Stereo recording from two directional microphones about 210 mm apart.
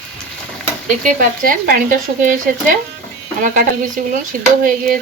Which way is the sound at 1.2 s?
40° right (ahead or behind).